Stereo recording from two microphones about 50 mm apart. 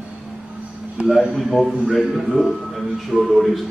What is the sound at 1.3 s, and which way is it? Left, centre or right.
Speech, centre.